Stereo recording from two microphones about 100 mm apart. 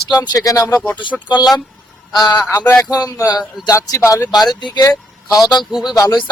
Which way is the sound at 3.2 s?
40° left (ahead or behind).